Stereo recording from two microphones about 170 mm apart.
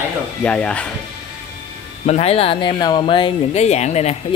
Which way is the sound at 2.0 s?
40° left (ahead or behind).